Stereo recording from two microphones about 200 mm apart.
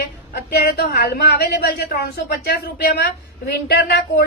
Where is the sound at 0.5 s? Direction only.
50° left (ahead or behind).